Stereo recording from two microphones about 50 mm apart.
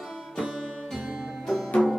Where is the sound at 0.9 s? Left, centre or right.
Centre.